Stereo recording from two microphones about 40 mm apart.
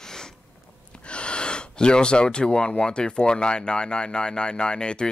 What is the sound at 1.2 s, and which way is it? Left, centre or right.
Speech, left.